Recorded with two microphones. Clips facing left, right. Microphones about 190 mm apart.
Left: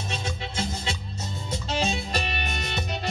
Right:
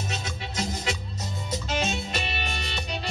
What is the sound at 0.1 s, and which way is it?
Music, 30° left (ahead or behind).